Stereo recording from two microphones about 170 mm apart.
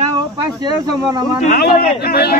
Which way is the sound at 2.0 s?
65° left (ahead or behind).